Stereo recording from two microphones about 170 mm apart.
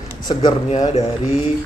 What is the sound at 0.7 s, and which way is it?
Speech, 45° left (ahead or behind).